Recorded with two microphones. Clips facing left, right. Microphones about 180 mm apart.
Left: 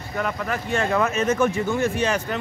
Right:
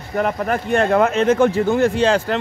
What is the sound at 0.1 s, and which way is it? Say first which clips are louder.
Speech: right 7 dB; 45° right (ahead or behind).